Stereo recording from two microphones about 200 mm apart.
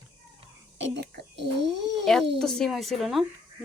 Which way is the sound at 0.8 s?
60° right (ahead or behind).